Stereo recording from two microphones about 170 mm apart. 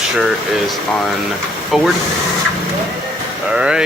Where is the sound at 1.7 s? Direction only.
Centre (ahead or behind).